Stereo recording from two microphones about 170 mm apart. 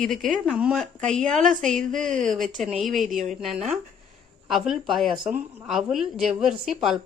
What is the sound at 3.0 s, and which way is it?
Speech, 50° right (ahead or behind).